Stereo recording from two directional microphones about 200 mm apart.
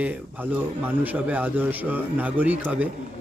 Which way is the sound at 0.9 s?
10° right (ahead or behind).